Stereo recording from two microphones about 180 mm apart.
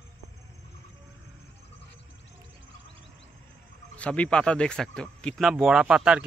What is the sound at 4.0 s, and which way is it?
Speech, 5° left (ahead or behind).